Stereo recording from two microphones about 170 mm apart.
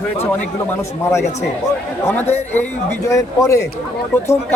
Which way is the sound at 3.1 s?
20° left (ahead or behind).